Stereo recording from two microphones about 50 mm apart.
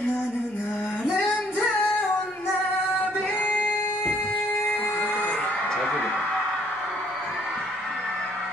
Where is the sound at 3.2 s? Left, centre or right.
Left.